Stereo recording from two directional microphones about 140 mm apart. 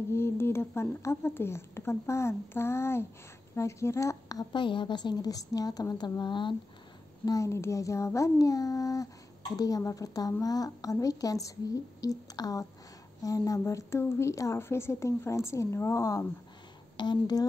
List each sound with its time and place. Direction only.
0.1 s a child's voice: 15° left (ahead or behind); by 6.5 s 35° left (ahead or behind)
7.2 s a child's voice: 20° left (ahead or behind)